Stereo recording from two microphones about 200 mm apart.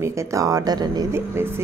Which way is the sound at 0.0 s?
15° right (ahead or behind).